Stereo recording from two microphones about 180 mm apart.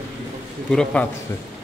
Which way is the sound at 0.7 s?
5° left (ahead or behind).